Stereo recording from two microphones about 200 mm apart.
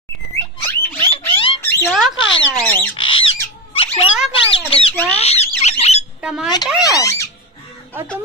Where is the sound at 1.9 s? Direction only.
Centre (ahead or behind).